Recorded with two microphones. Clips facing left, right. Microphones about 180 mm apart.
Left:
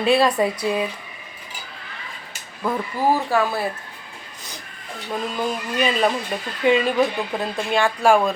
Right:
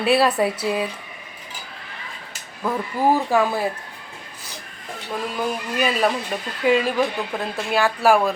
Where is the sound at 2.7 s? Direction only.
15° right (ahead or behind).